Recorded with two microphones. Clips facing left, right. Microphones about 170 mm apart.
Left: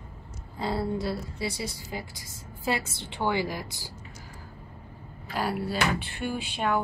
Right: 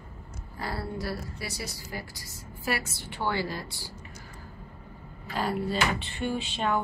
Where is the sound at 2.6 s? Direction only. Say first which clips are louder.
Left 2 dB; 25° left (ahead or behind).